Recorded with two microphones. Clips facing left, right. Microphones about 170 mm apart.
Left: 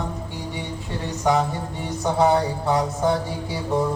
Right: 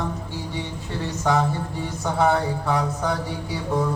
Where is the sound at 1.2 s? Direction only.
15° left (ahead or behind).